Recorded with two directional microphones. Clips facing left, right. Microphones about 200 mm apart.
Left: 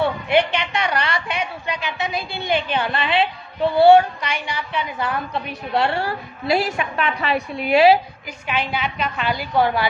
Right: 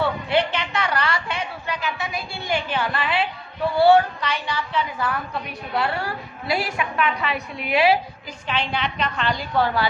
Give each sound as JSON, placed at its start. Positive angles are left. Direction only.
{"t": 0.0, "sound": "a woman's voice", "side_deg": 15}
{"t": 8.4, "sound": "a woman's voice", "side_deg": 5}